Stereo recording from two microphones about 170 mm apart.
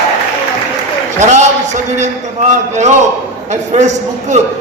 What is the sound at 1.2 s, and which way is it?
A man's voice, 45° right (ahead or behind).